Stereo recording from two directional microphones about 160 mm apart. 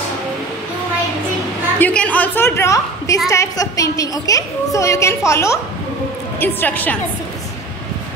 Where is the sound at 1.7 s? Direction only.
10° left (ahead or behind).